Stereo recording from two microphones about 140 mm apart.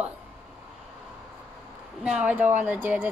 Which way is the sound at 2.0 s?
10° right (ahead or behind).